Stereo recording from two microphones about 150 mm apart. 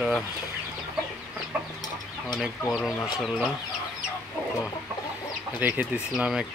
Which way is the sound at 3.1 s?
Centre (ahead or behind).